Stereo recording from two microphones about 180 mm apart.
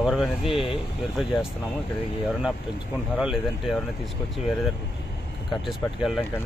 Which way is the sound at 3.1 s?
5° right (ahead or behind).